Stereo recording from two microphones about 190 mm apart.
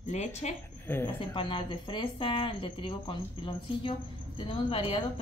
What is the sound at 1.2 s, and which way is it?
Speech, 25° left (ahead or behind).